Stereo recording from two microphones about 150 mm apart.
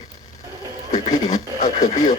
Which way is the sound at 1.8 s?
60° left (ahead or behind).